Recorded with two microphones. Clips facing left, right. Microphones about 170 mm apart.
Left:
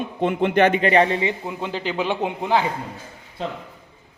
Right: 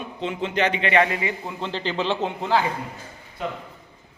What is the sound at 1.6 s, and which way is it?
A man's voice, 10° left (ahead or behind).